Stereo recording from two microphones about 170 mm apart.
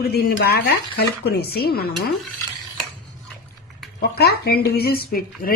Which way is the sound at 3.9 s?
70° left (ahead or behind).